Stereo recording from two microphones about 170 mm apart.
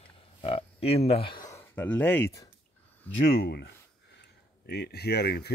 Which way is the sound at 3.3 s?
70° left (ahead or behind).